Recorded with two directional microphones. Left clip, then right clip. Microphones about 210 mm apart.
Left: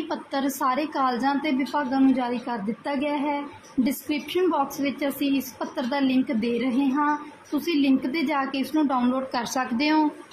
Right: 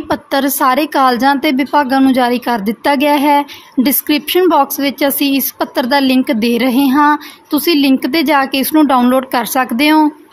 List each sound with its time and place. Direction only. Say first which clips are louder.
0.1 s a woman's voice: right 15 dB; 45° right (ahead or behind)